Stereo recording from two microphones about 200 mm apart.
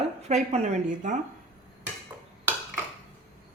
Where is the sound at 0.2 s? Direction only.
35° right (ahead or behind).